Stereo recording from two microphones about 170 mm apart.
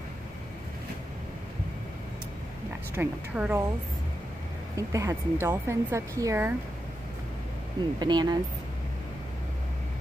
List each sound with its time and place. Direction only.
2.9 s speech: 10° right (ahead or behind)
4.7 s speech: 20° right (ahead or behind)
8.0 s speech: 25° right (ahead or behind)